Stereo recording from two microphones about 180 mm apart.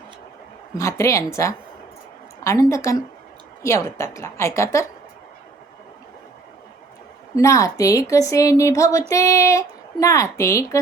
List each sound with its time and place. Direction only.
0.8 s a woman's voice: 15° left (ahead or behind)
7.3 s a woman's voice: 15° left (ahead or behind)